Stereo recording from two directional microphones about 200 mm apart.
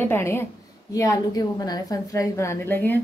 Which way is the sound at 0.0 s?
10° left (ahead or behind).